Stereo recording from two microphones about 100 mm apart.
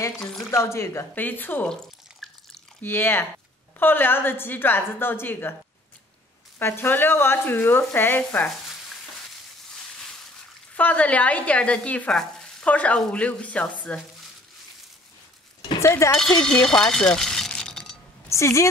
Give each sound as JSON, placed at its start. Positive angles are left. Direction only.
{"t": 0.2, "sound": "speech", "side_deg": 5}
{"t": 0.5, "sound": "speech", "side_deg": 30}
{"t": 1.7, "sound": "drip", "side_deg": 5}
{"t": 2.8, "sound": "speech", "side_deg": 20}
{"t": 6.6, "sound": "speech", "side_deg": 20}
{"t": 10.7, "sound": "speech", "side_deg": 15}
{"t": 15.8, "sound": "speech", "side_deg": 30}
{"t": 16.3, "sound": "speech", "side_deg": 5}
{"t": 18.3, "sound": "a woman's voice", "side_deg": 30}